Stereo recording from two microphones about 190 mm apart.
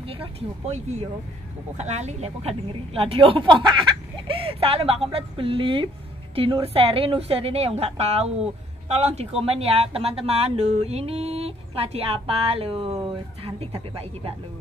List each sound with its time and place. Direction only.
0.1 s a woman's voice: 30° right (ahead or behind)